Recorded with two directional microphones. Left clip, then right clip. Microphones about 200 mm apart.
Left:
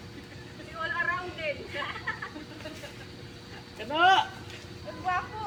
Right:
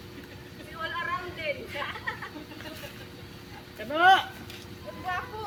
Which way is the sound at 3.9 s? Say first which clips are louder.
Right 2 dB; 5° right (ahead or behind).